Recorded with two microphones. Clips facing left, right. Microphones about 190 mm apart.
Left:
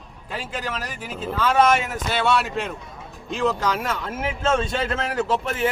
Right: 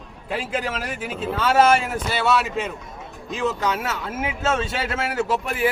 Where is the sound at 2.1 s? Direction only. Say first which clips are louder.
Even; 5° right (ahead or behind).